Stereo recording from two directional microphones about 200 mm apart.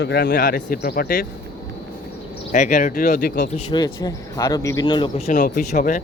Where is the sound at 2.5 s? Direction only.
40° left (ahead or behind).